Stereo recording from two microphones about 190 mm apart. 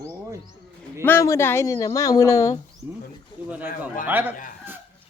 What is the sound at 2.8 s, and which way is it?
Speech, 10° right (ahead or behind).